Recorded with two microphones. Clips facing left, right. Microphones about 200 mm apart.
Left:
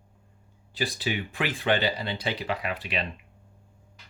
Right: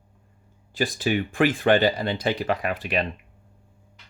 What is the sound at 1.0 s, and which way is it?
Speech, 50° right (ahead or behind).